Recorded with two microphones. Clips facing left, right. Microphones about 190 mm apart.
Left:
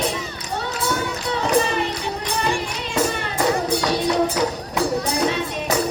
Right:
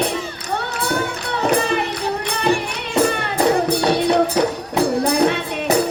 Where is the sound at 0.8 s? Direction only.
60° right (ahead or behind).